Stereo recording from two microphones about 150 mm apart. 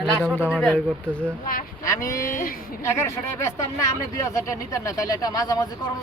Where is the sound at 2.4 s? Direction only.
70° left (ahead or behind).